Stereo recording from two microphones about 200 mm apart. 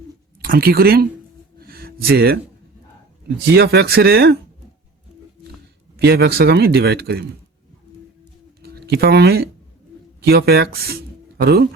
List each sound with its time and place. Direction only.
0.4 s a man's voice: 50° right (ahead or behind)
1.5 s a sound: 50° right (ahead or behind)
3.4 s a man's voice: 55° right (ahead or behind)
6.0 s a man's voice: 55° right (ahead or behind)
8.6 s speech: 50° right (ahead or behind)